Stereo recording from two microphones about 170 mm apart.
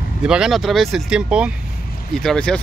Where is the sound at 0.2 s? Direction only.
5° right (ahead or behind).